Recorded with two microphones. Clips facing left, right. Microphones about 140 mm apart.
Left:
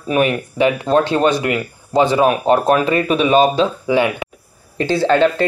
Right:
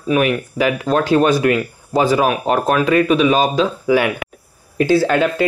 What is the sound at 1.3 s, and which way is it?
Speech, 20° left (ahead or behind).